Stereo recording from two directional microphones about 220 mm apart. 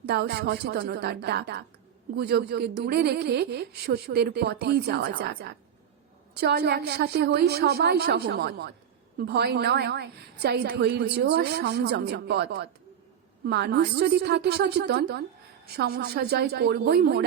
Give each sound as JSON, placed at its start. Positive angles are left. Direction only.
{"t": 0.0, "sound": "a woman's voice", "side_deg": -50}